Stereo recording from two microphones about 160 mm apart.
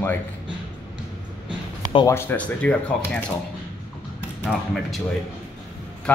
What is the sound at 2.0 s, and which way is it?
Speech, 15° left (ahead or behind).